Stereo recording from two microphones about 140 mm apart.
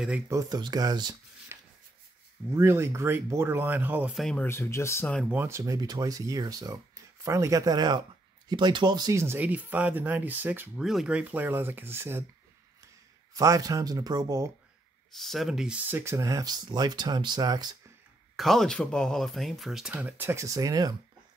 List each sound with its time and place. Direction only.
0.3 s speech: 25° right (ahead or behind)
1.5 s a sound: 20° right (ahead or behind)
2.5 s speech: 20° right (ahead or behind)
4.1 s speech: 5° left (ahead or behind)
4.5 s speech: 20° left (ahead or behind)
5.2 s speech: 15° right (ahead or behind)
10.8 s speech: 5° right (ahead or behind)
13.3 s speech: 25° right (ahead or behind)
15.1 s speech: centre (ahead or behind); by 17.7 s 30° right (ahead or behind)
18.3 s speech: centre (ahead or behind); by 20.9 s 25° right (ahead or behind)